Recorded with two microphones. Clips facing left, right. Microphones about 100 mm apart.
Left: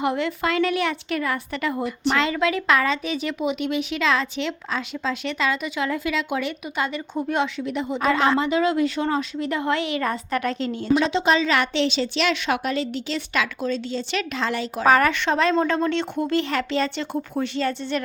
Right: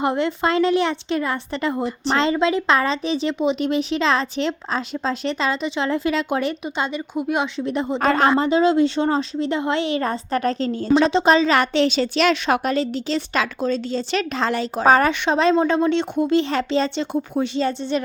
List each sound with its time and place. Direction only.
0.0 s speech: 30° right (ahead or behind)
6.7 s a woman's voice: 25° right (ahead or behind)
7.2 s speech: 15° right (ahead or behind)
7.6 s a woman's voice: 35° right (ahead or behind)